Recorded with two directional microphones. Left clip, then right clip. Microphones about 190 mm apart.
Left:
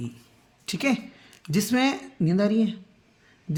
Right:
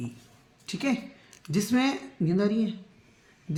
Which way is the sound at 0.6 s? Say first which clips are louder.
Left 4 dB; 60° left (ahead or behind).